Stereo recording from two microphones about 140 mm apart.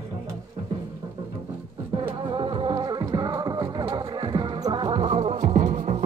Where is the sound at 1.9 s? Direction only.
35° right (ahead or behind); by 6.0 s 65° right (ahead or behind).